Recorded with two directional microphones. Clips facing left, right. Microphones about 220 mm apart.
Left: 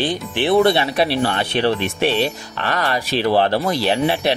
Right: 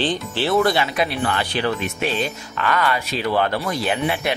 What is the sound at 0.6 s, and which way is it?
Speech, 30° left (ahead or behind).